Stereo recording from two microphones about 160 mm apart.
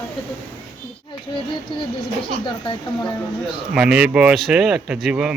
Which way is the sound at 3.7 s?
5° right (ahead or behind).